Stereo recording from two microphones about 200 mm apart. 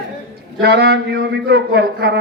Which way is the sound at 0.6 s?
55° right (ahead or behind).